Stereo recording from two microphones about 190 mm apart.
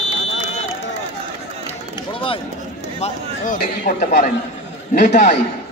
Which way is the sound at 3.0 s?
45° left (ahead or behind).